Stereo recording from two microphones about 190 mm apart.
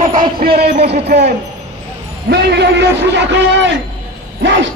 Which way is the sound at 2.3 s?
60° right (ahead or behind).